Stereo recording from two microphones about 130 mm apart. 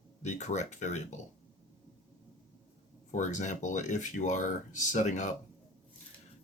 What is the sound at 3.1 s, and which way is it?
Speech, 70° left (ahead or behind).